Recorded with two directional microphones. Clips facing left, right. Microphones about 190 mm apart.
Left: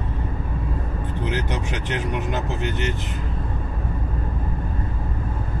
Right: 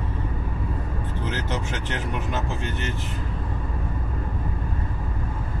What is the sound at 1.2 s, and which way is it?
Speech, 15° left (ahead or behind).